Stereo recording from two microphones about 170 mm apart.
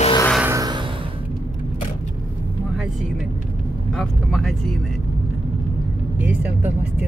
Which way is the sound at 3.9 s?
Centre (ahead or behind).